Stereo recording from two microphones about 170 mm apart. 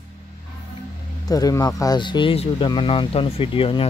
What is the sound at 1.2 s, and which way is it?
Speech, 20° left (ahead or behind).